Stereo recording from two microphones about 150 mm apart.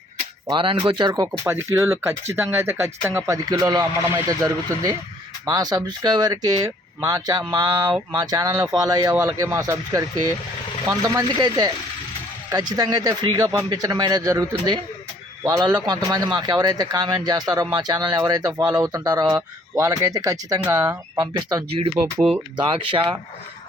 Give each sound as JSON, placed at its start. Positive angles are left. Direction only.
{"t": 0.5, "sound": "speech", "side_deg": -35}
{"t": 1.3, "sound": "speech", "side_deg": -15}